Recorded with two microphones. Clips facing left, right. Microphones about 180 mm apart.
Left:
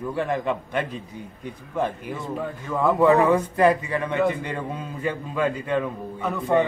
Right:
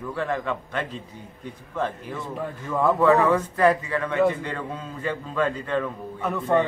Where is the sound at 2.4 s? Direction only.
Centre (ahead or behind).